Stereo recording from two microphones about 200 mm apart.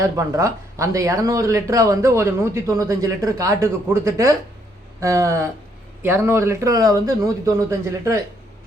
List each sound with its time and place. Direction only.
0.0 s speech: 15° right (ahead or behind)